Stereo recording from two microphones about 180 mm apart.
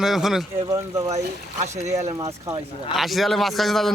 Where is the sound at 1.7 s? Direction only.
40° right (ahead or behind).